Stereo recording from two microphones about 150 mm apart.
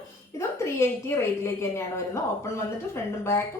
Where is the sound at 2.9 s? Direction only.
15° left (ahead or behind).